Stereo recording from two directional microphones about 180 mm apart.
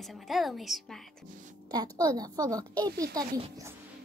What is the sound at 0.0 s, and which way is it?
A woman's voice, centre (ahead or behind).